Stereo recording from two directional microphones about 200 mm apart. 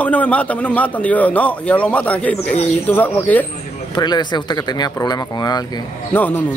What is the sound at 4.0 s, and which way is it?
Speech, 20° left (ahead or behind).